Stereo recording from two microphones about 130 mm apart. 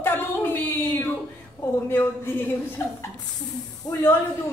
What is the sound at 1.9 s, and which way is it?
Speech, 15° left (ahead or behind).